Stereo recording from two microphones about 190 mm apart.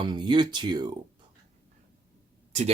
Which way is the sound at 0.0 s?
25° right (ahead or behind).